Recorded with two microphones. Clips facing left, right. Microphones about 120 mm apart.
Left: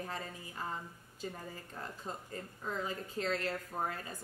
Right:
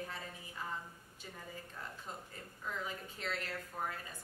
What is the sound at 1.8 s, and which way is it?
Speech, 40° left (ahead or behind).